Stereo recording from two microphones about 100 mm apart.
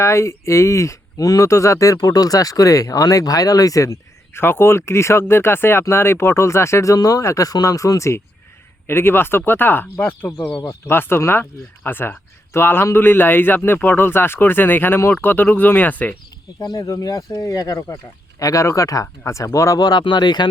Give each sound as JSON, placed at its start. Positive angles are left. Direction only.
{"t": 0.0, "sound": "speech", "side_deg": 30}
{"t": 4.4, "sound": "speech", "side_deg": 25}
{"t": 10.5, "sound": "speech", "side_deg": 55}
{"t": 10.8, "sound": "speech", "side_deg": 20}
{"t": 16.6, "sound": "speech", "side_deg": 40}